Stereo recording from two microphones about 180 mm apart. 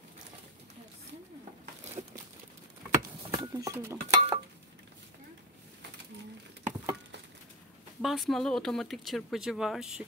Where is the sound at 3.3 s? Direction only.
20° right (ahead or behind).